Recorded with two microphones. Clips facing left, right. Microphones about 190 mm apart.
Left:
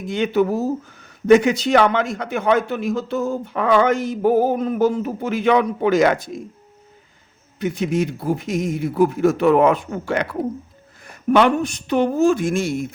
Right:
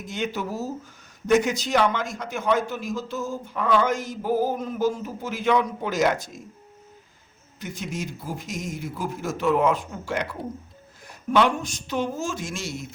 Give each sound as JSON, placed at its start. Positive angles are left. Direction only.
{"t": 0.0, "sound": "speech", "side_deg": 60}
{"t": 7.6, "sound": "speech", "side_deg": 60}